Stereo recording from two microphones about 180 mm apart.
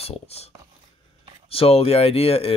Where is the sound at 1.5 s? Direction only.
30° left (ahead or behind).